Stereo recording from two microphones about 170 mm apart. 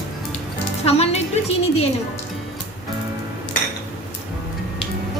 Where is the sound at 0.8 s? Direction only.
40° left (ahead or behind).